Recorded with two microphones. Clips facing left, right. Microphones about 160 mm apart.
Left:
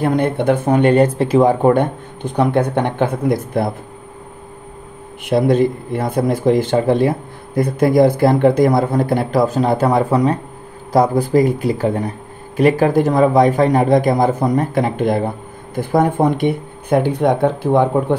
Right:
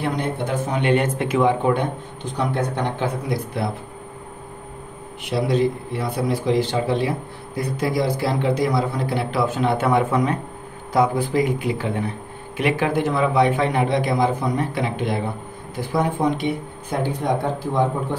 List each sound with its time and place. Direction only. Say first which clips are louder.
0.0 s a man's voice: left 8 dB; 55° left (ahead or behind)
5.2 s a man's voice: left 6 dB; 50° left (ahead or behind)